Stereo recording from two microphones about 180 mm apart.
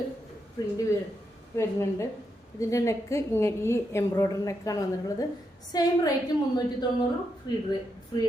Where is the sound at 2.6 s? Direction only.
15° left (ahead or behind).